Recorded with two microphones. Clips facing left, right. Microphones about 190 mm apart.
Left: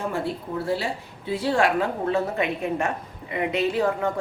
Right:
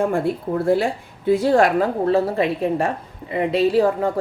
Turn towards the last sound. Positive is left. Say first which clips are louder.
# right 6 dB
turn(degrees=-35)  # may be behind; listen again after turning